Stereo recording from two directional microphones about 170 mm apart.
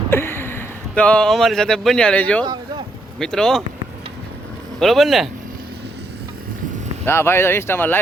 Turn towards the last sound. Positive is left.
turn(degrees=10)  # may be behind; listen again after turning